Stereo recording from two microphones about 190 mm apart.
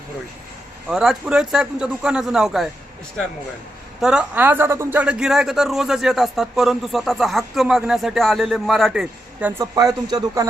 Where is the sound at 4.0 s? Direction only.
5° right (ahead or behind).